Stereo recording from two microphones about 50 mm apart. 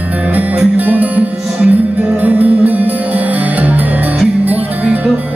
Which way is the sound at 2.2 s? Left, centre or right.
Right.